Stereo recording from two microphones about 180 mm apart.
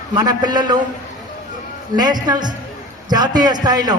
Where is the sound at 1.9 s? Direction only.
25° right (ahead or behind).